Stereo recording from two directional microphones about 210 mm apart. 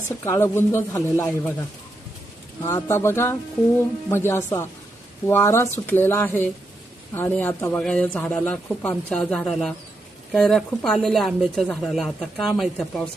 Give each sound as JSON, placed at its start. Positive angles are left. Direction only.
{"t": 0.3, "sound": "a man's voice", "side_deg": 10}
{"t": 2.6, "sound": "a man's voice", "side_deg": 15}